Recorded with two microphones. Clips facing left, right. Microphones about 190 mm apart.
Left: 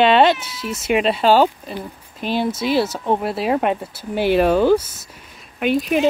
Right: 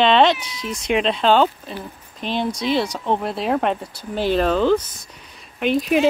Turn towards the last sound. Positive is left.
turn(degrees=0)  # may be behind; listen again after turning